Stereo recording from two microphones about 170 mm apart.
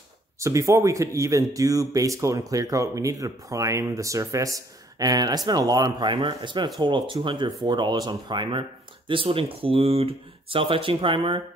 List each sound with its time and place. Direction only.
0.4 s speech: 20° right (ahead or behind)